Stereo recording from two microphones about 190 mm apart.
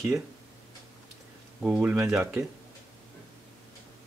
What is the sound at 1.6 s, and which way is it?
Speech, 5° right (ahead or behind).